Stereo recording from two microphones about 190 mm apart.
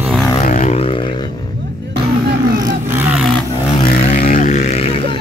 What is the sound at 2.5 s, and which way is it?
Roar, 15° right (ahead or behind).